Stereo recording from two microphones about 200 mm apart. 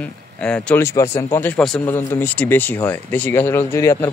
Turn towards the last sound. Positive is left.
turn(degrees=15)  # may be behind; listen again after turning